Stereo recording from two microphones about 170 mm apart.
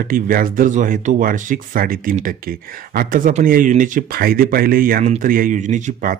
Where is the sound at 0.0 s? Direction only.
55° right (ahead or behind).